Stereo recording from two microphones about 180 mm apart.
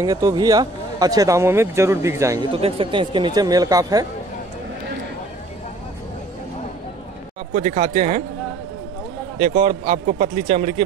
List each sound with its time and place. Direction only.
0.0 s speech: 20° right (ahead or behind)
2.5 s speech: 30° right (ahead or behind)
7.5 s speech: 40° right (ahead or behind)
9.4 s speech: 40° right (ahead or behind)